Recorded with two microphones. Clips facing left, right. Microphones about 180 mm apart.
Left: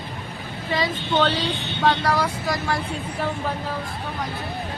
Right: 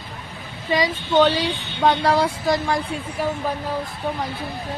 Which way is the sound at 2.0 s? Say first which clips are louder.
Right 4 dB; 25° right (ahead or behind).